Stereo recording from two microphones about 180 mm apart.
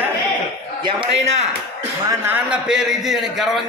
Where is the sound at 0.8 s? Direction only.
25° right (ahead or behind).